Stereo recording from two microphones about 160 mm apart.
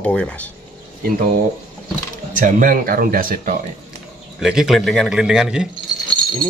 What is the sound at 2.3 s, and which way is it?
Speech, 55° right (ahead or behind).